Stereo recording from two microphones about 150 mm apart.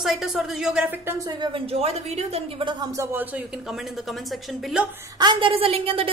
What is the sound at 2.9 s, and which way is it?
Speech, 15° right (ahead or behind).